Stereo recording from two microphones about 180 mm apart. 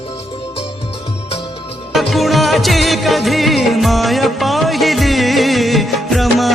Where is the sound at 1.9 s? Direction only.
Centre (ahead or behind).